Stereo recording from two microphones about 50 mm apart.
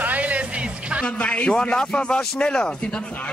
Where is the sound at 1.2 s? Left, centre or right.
Left.